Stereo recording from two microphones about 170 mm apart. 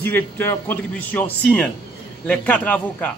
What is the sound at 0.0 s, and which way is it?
Speech, 10° left (ahead or behind).